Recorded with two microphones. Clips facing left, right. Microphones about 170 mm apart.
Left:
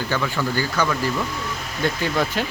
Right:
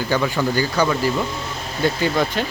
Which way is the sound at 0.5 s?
15° right (ahead or behind).